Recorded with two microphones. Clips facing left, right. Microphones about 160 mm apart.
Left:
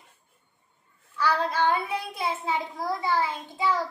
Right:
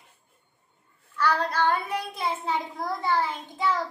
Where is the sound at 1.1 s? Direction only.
10° left (ahead or behind).